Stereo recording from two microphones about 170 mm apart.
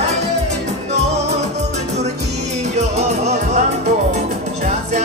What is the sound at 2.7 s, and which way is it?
Music, 40° right (ahead or behind).